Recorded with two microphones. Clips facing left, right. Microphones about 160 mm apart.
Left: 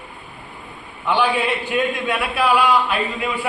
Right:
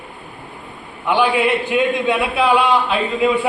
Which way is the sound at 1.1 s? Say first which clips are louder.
Right 3 dB; 15° right (ahead or behind).